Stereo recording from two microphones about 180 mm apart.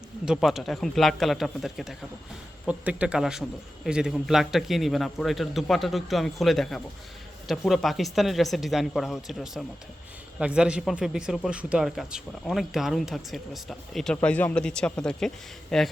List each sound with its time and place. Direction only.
0.3 s speech: centre (ahead or behind)